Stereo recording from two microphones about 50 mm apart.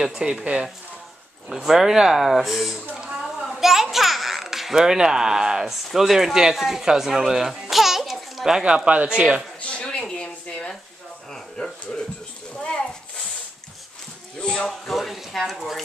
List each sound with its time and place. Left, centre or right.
0.1 s speech: centre
1.5 s a child's voice: centre
7.7 s babbling: centre
8.6 s speech: right
9.6 s a sound: left
14.6 s speech: centre